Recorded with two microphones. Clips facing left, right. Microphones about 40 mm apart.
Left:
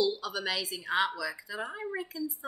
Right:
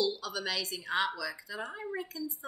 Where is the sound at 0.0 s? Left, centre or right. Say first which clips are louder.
Left 3 dB; centre.